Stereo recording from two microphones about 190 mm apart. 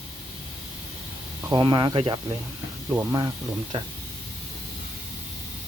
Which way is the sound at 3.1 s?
25° right (ahead or behind).